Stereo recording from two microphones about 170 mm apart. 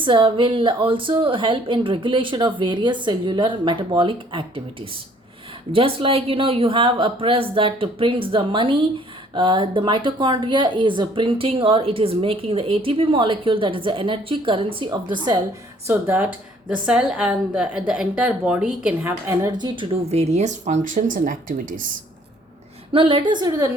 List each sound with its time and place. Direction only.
0.0 s a woman's voice: 30° right (ahead or behind)
5.7 s a woman's voice: 35° right (ahead or behind)
15.9 s a woman's voice: 10° right (ahead or behind)
19.3 s a woman's voice: 20° right (ahead or behind); by 21.8 s 50° right (ahead or behind)
22.9 s speech: 30° right (ahead or behind)